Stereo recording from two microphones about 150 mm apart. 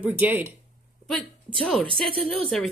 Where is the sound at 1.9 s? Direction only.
5° left (ahead or behind).